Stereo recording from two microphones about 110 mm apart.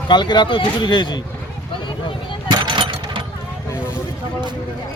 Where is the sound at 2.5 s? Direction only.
45° right (ahead or behind).